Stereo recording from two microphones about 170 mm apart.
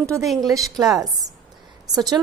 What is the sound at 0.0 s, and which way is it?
Speech, 20° right (ahead or behind).